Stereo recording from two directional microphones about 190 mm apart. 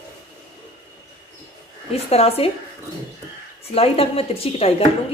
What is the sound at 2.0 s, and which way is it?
Speech, 30° left (ahead or behind).